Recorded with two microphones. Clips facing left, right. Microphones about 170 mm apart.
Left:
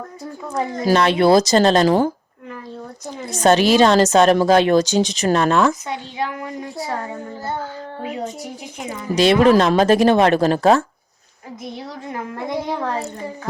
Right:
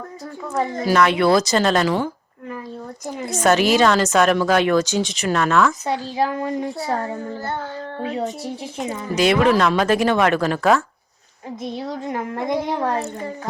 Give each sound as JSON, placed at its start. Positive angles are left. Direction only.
{"t": 0.9, "sound": "speech", "side_deg": 30}
{"t": 3.4, "sound": "speech", "side_deg": 30}
{"t": 5.8, "sound": "a woman's voice", "side_deg": -35}
{"t": 9.1, "sound": "speech", "side_deg": 30}
{"t": 11.8, "sound": "a woman's voice", "side_deg": -20}